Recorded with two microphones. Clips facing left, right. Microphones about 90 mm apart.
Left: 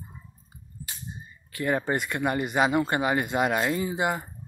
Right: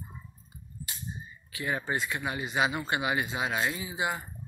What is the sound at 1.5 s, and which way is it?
Speech, 45° left (ahead or behind).